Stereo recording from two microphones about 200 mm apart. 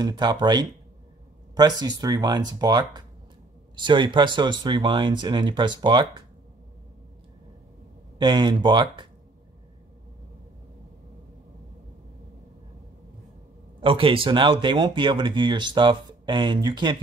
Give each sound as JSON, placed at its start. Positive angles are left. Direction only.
{"t": 0.0, "sound": "speech", "side_deg": -20}
{"t": 8.2, "sound": "speech", "side_deg": -20}
{"t": 13.7, "sound": "speech", "side_deg": -25}